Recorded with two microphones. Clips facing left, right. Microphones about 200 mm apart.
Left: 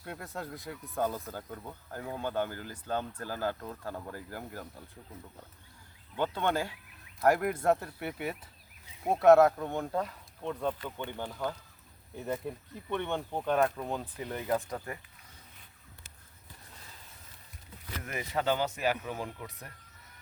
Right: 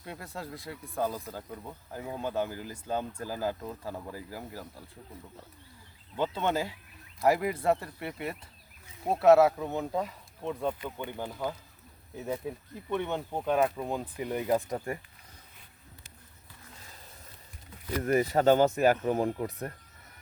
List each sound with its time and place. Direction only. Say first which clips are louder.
0.0 s speech: even; centre (ahead or behind)
6.1 s speech: right 1 dB; 5° right (ahead or behind)
17.9 s speech: right 9 dB; 40° right (ahead or behind)